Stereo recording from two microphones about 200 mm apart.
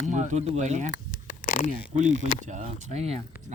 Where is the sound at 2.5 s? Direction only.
35° right (ahead or behind).